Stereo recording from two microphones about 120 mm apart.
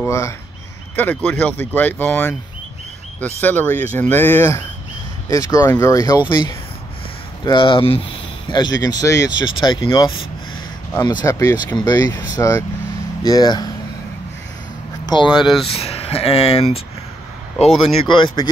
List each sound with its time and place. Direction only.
0.0 s speech: 25° left (ahead or behind)
6.2 s speech: 40° left (ahead or behind)
15.2 s speech: 5° right (ahead or behind)
15.6 s speech: 55° left (ahead or behind)
18.0 s speech: 45° left (ahead or behind)